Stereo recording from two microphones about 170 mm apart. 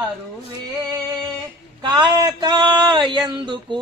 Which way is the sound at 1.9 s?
25° right (ahead or behind).